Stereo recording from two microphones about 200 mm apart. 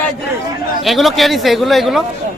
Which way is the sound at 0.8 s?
Centre (ahead or behind).